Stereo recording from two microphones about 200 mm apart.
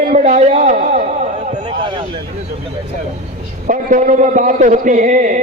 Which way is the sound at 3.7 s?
40° right (ahead or behind).